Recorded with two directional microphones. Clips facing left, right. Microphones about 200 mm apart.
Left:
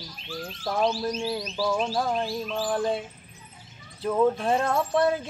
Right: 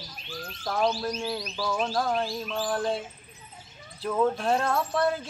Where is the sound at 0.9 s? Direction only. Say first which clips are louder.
Left 2 dB; 25° left (ahead or behind).